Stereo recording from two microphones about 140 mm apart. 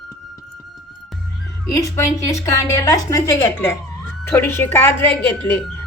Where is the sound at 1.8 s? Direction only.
20° left (ahead or behind).